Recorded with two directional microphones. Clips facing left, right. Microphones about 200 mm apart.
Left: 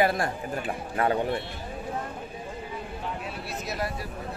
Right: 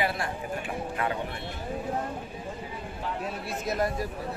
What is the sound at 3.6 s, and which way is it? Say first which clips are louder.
Speech: right 5 dB; 50° right (ahead or behind).